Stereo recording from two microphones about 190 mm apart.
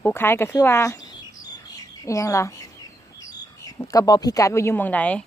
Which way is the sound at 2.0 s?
15° left (ahead or behind).